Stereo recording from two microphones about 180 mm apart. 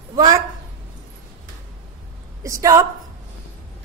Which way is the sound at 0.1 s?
20° right (ahead or behind).